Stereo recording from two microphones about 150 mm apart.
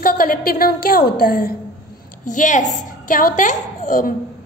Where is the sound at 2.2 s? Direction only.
55° left (ahead or behind).